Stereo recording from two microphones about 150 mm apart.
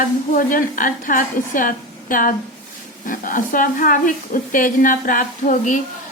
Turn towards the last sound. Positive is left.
turn(degrees=60)  # may be behind; listen again after turning